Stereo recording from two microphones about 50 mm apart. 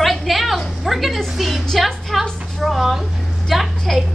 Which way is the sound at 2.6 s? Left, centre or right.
Centre.